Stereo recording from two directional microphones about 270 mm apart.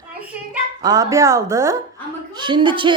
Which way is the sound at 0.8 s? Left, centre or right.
Centre.